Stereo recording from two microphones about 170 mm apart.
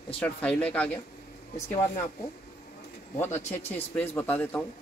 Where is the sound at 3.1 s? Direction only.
15° left (ahead or behind).